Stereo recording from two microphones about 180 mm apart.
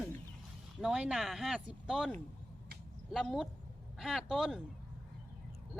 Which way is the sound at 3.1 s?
Centre (ahead or behind).